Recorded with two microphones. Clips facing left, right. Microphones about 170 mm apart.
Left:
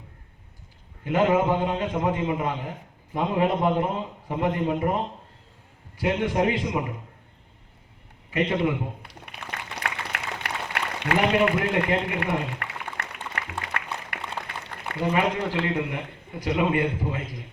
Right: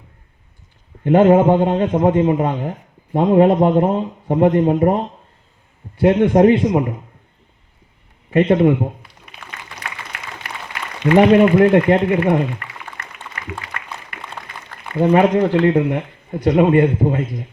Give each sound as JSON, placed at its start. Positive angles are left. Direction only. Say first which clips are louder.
{"t": 1.0, "sound": "a man's voice", "louder": "right 10 dB", "side_deg": -50}
{"t": 6.0, "sound": "a man's voice", "louder": "right 12 dB", "side_deg": -50}
{"t": 8.3, "sound": "a man's voice", "louder": "right 11 dB", "side_deg": -55}
{"t": 9.0, "sound": "a sound", "louder": "even", "side_deg": 70}
{"t": 11.6, "sound": "a man's voice", "louder": "right 12 dB", "side_deg": -45}
{"t": 12.5, "sound": "a sound", "louder": "even", "side_deg": 70}
{"t": 15.1, "sound": "a man's voice", "louder": "right 11 dB", "side_deg": -50}